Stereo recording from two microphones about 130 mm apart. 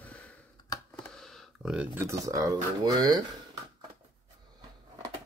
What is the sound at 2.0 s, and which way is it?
Speech, 25° right (ahead or behind).